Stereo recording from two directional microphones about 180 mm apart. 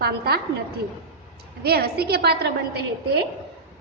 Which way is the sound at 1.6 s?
60° right (ahead or behind).